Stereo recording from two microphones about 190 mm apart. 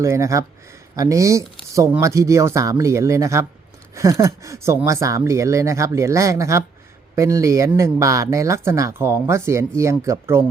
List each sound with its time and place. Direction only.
0.0 s speech: 15° right (ahead or behind)